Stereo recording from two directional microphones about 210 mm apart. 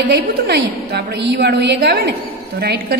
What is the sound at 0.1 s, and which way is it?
A woman's voice, 50° right (ahead or behind).